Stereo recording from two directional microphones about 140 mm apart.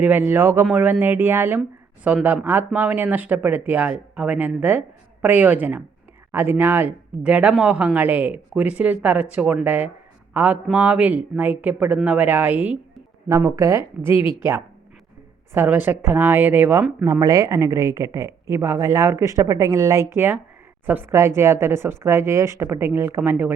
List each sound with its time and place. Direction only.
0.0 s speech: 15° right (ahead or behind)
13.2 s a woman's voice: 20° right (ahead or behind)
17.1 s a woman's voice: 25° right (ahead or behind)